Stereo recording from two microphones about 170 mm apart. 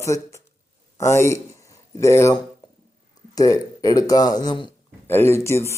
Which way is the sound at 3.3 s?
20° left (ahead or behind).